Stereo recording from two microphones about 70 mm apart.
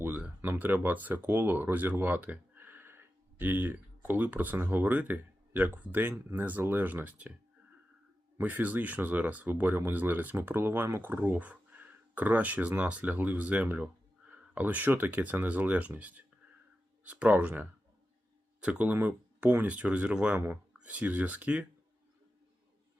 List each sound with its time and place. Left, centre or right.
0.6 s speech: right
8.4 s speech: right